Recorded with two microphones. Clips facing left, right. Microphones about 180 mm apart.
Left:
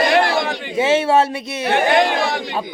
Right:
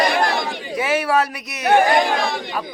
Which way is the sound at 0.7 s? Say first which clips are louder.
Left 4 dB; 25° left (ahead or behind).